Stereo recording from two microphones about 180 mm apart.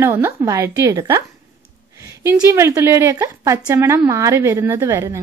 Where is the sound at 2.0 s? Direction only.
15° right (ahead or behind).